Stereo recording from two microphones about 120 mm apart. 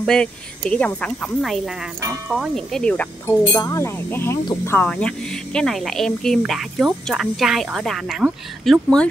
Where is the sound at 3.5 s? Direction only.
25° left (ahead or behind); by 9.1 s 5° left (ahead or behind).